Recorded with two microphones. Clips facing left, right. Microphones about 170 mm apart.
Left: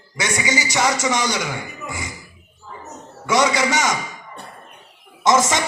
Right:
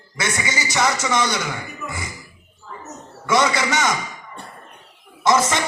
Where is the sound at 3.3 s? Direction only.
15° left (ahead or behind).